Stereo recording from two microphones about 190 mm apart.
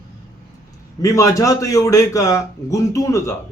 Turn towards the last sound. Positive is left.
turn(degrees=15)  # may be behind; listen again after turning